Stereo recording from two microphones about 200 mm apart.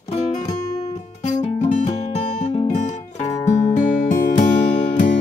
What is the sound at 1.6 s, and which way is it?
Music, 35° left (ahead or behind).